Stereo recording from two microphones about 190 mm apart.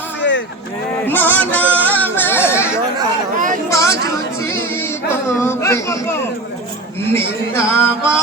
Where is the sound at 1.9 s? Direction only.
10° left (ahead or behind).